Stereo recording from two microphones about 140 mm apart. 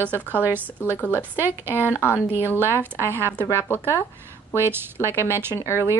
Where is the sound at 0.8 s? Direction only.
15° left (ahead or behind).